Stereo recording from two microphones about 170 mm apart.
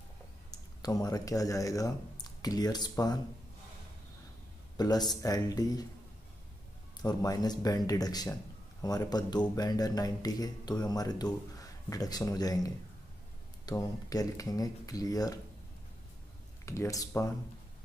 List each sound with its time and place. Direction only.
0.5 s speech: 20° left (ahead or behind)
4.7 s speech: 25° left (ahead or behind)
7.0 s speech: 25° left (ahead or behind)
16.6 s speech: 15° left (ahead or behind)